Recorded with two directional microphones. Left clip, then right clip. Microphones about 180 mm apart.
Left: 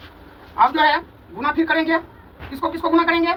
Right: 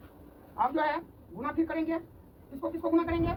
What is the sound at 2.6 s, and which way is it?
Speech, 10° right (ahead or behind).